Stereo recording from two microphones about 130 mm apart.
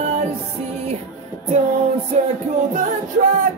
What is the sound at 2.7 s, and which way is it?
Music, 75° right (ahead or behind).